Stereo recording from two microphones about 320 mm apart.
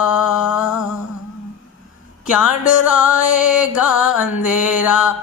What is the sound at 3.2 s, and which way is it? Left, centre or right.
Music, left.